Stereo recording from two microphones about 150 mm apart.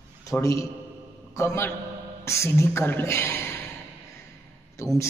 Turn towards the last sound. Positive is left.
turn(degrees=20)  # may be behind; listen again after turning